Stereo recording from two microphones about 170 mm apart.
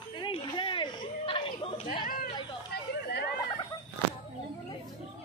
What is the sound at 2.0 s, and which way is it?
Chatter, 60° left (ahead or behind).